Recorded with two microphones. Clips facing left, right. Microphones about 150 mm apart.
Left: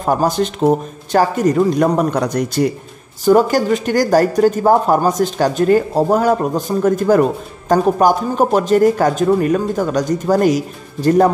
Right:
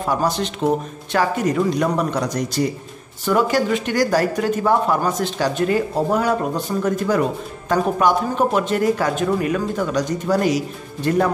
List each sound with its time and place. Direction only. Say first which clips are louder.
0.0 s speech: left 5 dB; 45° left (ahead or behind)
3.3 s speech: left 6 dB; 40° left (ahead or behind)